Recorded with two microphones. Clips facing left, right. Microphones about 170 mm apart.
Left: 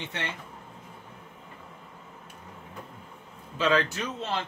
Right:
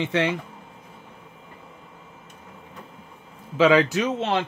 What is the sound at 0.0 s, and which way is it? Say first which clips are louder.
Speech: right 13 dB; 90° right.